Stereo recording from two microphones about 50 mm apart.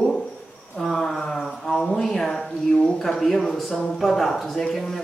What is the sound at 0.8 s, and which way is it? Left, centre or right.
Speech, centre.